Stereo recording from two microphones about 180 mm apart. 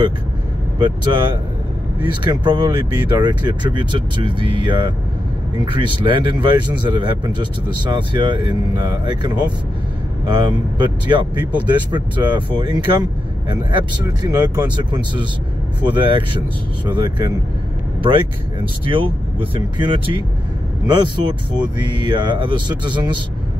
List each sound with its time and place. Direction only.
0.7 s speech: 25° right (ahead or behind)
18.9 s speech: 25° right (ahead or behind)